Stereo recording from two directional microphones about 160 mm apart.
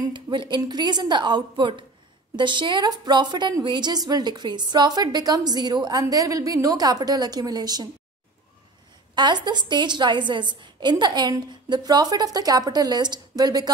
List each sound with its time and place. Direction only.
0.0 s a woman's voice: 30° right (ahead or behind)
9.1 s a woman's voice: 30° right (ahead or behind)